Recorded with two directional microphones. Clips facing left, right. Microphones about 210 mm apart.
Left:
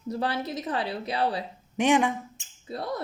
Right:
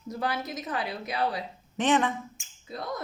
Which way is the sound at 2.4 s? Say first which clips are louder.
Left 3 dB; 30° left (ahead or behind).